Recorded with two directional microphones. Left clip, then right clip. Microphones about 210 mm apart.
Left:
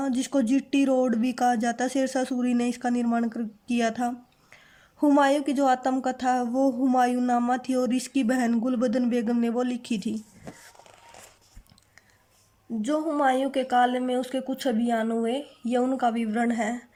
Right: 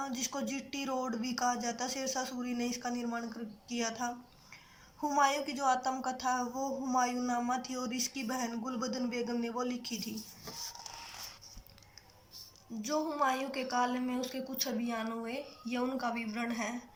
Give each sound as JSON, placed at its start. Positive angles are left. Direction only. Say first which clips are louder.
{"t": 0.0, "sound": "a woman's voice", "louder": "left 11 dB", "side_deg": 45}
{"t": 12.8, "sound": "a woman's voice", "louder": "left 8 dB", "side_deg": 35}